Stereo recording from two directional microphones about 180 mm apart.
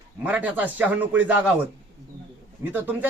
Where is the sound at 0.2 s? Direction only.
10° right (ahead or behind).